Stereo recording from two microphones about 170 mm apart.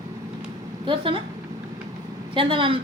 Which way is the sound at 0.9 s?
30° right (ahead or behind).